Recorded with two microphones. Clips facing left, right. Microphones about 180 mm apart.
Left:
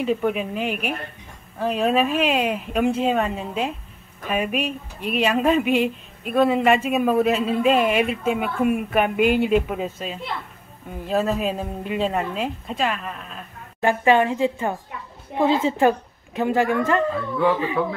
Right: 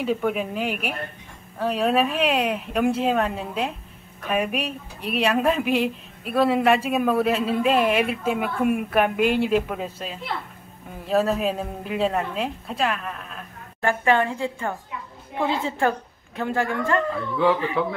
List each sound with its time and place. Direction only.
0.0 s speech: centre (ahead or behind)
13.7 s a woman's voice: 15° left (ahead or behind)